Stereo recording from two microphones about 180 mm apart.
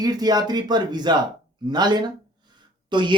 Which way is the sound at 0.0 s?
20° right (ahead or behind).